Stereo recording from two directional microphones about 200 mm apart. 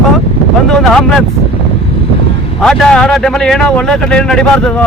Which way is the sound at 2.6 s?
5° left (ahead or behind).